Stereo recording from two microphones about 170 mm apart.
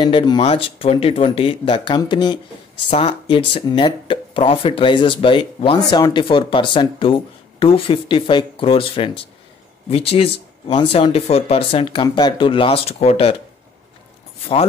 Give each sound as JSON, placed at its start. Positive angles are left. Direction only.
{"t": 0.0, "sound": "speech", "side_deg": 25}